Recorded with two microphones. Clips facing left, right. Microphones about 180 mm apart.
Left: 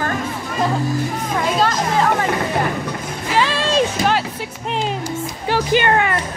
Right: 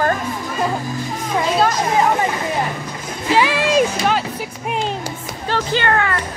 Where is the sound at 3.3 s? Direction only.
15° right (ahead or behind).